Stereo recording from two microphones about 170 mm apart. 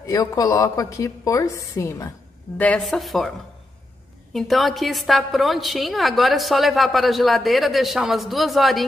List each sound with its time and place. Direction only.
0.0 s a woman's voice: 20° left (ahead or behind); by 8.8 s centre (ahead or behind)